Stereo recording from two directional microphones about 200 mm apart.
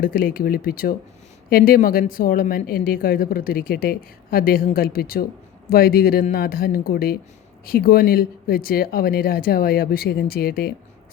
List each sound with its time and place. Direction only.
0.0 s a woman's voice: 45° left (ahead or behind)